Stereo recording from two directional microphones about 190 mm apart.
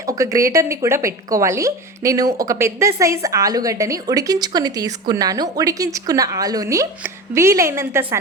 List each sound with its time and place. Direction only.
0.0 s speech: 15° right (ahead or behind)